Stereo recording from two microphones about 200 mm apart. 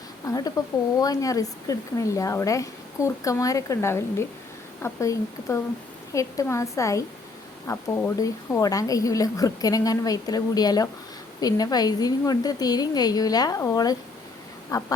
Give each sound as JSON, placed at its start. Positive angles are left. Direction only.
{"t": 0.3, "sound": "a woman's voice", "side_deg": 20}